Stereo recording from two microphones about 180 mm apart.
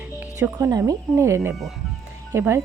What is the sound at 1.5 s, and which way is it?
Speech, centre (ahead or behind).